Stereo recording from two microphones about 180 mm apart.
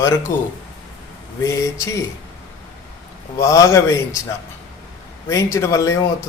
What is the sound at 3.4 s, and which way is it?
Speech, 15° left (ahead or behind).